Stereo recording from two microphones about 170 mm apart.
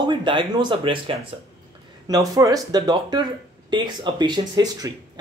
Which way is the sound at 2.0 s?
20° right (ahead or behind).